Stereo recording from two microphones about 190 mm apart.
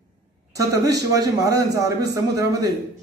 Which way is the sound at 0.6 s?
20° right (ahead or behind).